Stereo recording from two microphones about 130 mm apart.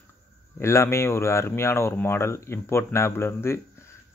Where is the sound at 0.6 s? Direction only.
20° left (ahead or behind).